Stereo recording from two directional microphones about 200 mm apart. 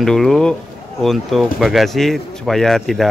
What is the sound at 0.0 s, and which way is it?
Speech, centre (ahead or behind).